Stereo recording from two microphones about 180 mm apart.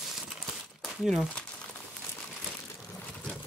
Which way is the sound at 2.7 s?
5° left (ahead or behind).